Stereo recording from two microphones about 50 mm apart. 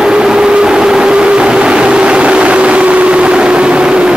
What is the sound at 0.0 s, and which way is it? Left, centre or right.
Vehicle, centre.